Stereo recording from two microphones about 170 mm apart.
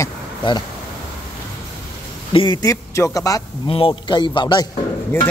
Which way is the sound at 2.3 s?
25° left (ahead or behind).